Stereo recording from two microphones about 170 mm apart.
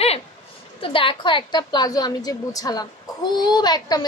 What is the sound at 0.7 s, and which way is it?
A woman's voice, 30° left (ahead or behind).